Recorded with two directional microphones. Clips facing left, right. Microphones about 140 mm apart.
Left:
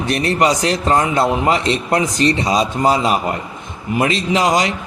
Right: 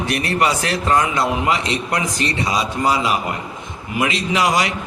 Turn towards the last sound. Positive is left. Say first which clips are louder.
# left 3 dB
turn(degrees=20)  # may be behind; listen again after turning